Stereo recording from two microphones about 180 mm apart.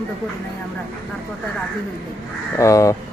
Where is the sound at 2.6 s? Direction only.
20° left (ahead or behind).